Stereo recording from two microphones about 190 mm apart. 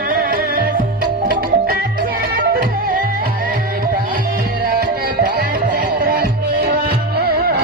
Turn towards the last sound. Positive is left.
turn(degrees=-50)  # may be behind; listen again after turning